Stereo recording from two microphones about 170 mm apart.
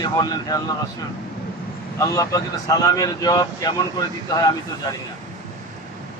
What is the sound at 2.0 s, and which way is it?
Speech, 20° left (ahead or behind).